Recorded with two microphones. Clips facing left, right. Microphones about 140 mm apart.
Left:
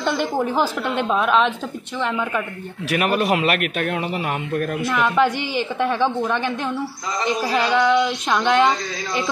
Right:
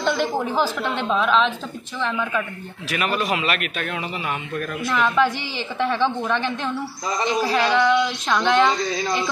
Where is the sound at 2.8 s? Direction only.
60° left (ahead or behind).